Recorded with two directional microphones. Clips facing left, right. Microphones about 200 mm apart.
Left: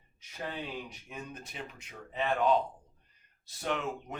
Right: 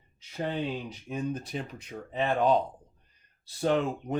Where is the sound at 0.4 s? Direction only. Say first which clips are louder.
Right 7 dB; 30° right (ahead or behind).